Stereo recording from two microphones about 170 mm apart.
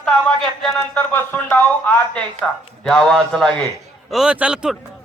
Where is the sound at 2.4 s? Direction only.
Centre (ahead or behind).